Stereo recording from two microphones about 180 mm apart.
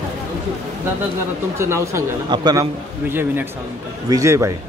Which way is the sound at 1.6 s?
15° right (ahead or behind).